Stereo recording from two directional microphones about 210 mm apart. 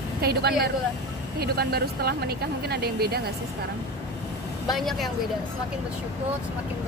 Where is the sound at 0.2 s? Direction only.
50° right (ahead or behind).